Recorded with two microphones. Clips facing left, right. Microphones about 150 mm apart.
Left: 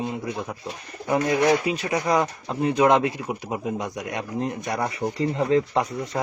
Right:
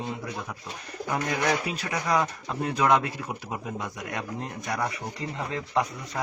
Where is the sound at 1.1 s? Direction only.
25° left (ahead or behind).